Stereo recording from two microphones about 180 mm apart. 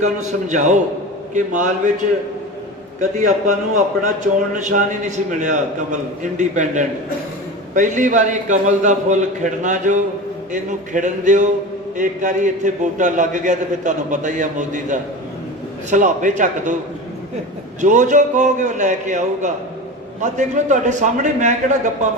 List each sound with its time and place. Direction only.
0.0 s a man's voice: 40° right (ahead or behind)
4.5 s a man's voice: 40° right (ahead or behind)
17.7 s a man's voice: 40° right (ahead or behind)